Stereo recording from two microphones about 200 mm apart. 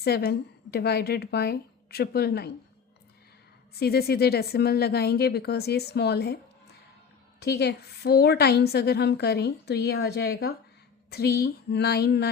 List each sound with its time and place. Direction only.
0.0 s a woman's voice: 50° left (ahead or behind)
3.8 s a woman's voice: 50° left (ahead or behind)
7.4 s a woman's voice: 55° left (ahead or behind)